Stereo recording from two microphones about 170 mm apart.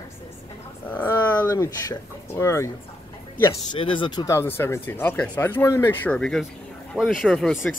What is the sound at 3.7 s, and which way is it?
Speech, 30° left (ahead or behind).